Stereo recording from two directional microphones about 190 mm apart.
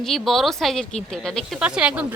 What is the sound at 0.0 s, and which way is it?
A woman's voice, centre (ahead or behind).